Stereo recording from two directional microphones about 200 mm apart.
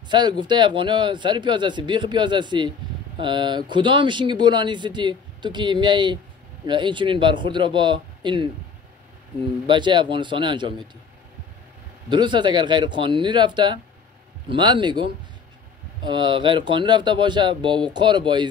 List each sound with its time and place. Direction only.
0.1 s speech: 20° right (ahead or behind)
9.7 s speech: 25° right (ahead or behind)
12.1 s speech: 20° right (ahead or behind)